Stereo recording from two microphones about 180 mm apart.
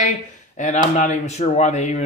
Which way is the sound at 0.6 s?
40° left (ahead or behind).